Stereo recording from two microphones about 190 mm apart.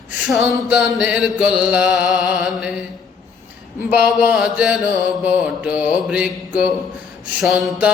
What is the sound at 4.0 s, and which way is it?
Mantra, 5° right (ahead or behind).